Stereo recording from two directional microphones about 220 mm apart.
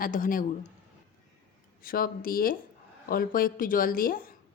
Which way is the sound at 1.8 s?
40° left (ahead or behind).